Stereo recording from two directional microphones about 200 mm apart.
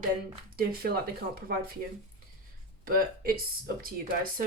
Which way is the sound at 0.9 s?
45° right (ahead or behind).